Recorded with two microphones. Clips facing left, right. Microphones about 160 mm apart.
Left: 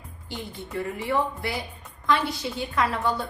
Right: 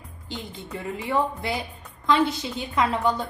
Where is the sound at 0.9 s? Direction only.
20° right (ahead or behind).